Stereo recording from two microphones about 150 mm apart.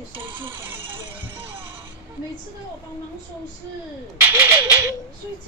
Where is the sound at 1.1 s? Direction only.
15° right (ahead or behind).